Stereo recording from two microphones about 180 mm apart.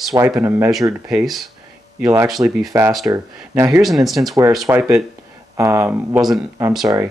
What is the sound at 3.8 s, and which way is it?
Speech, centre (ahead or behind).